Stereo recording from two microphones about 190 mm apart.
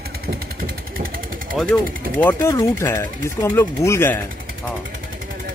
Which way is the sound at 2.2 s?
15° left (ahead or behind).